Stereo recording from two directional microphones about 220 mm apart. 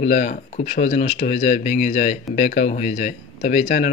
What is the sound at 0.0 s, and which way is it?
Speech, 30° left (ahead or behind).